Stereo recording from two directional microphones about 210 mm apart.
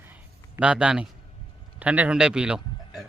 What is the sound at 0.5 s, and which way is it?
A man's voice, 5° right (ahead or behind).